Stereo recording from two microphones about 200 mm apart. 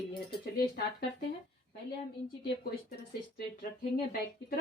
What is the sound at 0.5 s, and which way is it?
Speech, 45° left (ahead or behind).